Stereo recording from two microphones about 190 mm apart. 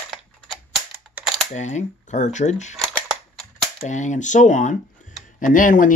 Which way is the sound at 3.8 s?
40° left (ahead or behind).